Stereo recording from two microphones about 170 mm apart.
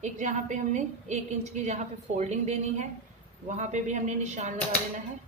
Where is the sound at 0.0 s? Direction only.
45° right (ahead or behind).